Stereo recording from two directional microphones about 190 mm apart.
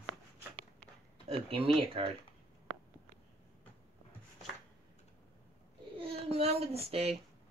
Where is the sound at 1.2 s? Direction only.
30° right (ahead or behind).